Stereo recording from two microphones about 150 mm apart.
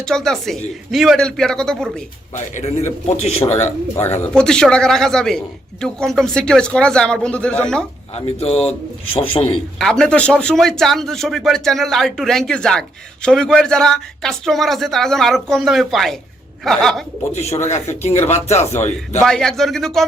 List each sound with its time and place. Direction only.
0.0 s a man's voice: 5° left (ahead or behind)
3.1 s speech: 45° left (ahead or behind)
3.9 s a man's voice: 15° left (ahead or behind)
8.1 s a man's voice: 45° left (ahead or behind)
9.7 s a man's voice: 5° left (ahead or behind)
17.3 s speech: 45° left (ahead or behind)
19.2 s a man's voice: 5° left (ahead or behind)